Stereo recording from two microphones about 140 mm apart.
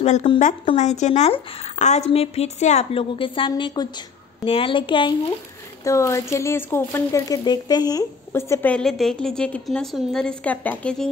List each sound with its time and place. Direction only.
0.0 s a woman's voice: 55° left (ahead or behind); by 5.1 s 35° left (ahead or behind)
5.9 s speech: 20° left (ahead or behind)
8.3 s a woman's voice: 15° left (ahead or behind)
8.7 s a woman's voice: 5° left (ahead or behind)